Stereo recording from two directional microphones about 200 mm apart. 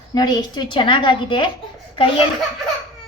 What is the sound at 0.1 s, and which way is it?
A woman's voice, 20° left (ahead or behind).